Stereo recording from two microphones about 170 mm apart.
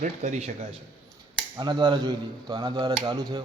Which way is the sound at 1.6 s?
25° right (ahead or behind).